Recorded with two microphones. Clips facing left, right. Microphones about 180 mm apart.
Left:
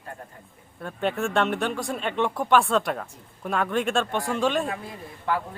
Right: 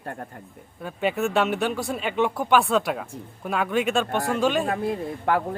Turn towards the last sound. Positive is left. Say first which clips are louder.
# right 5 dB
turn(degrees=-55)  # may be behind; listen again after turning